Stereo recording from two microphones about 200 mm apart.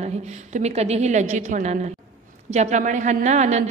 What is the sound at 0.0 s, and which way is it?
A woman's voice, 35° right (ahead or behind).